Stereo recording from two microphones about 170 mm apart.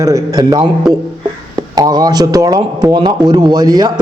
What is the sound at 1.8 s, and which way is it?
A man's voice, 25° right (ahead or behind).